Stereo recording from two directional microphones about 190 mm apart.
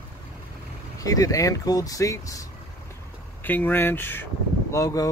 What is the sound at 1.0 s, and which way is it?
Speech, 20° left (ahead or behind).